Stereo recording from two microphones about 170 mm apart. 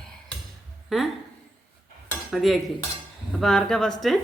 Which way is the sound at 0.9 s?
Centre (ahead or behind).